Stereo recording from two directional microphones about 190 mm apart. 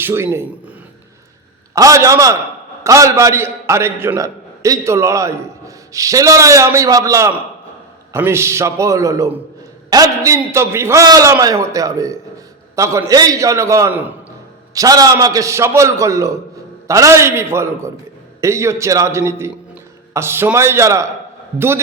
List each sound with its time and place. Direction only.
0.0 s a man's voice: 10° right (ahead or behind)
1.7 s a man's voice: 15° right (ahead or behind)